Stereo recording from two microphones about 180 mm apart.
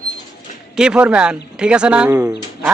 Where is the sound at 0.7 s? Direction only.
5° right (ahead or behind).